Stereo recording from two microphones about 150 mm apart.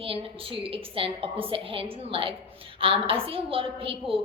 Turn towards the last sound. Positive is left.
turn(degrees=-35)  # may be behind; listen again after turning